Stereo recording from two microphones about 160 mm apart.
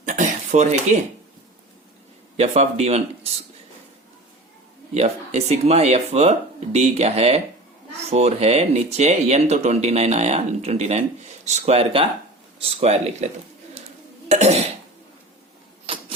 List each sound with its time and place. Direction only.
0.0 s a sound: 50° right (ahead or behind)
2.3 s speech: 40° right (ahead or behind)
4.9 s speech: 40° right (ahead or behind)
14.3 s cough: 45° right (ahead or behind)